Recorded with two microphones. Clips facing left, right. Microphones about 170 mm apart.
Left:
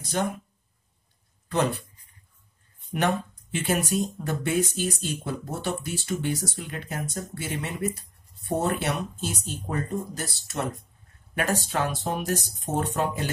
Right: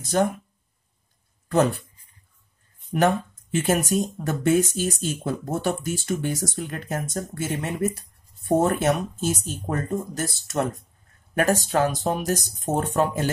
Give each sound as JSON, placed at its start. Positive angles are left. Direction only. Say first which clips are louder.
{"t": 1.5, "sound": "speech", "louder": "right 5 dB", "side_deg": -45}
{"t": 3.5, "sound": "speech", "louder": "right 4 dB", "side_deg": -45}